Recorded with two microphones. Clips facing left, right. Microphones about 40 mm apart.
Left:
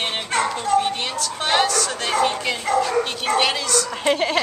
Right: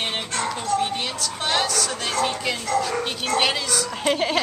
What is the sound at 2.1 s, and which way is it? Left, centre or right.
Speech, centre.